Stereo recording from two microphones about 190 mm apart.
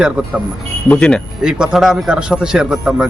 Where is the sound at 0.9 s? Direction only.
5° left (ahead or behind).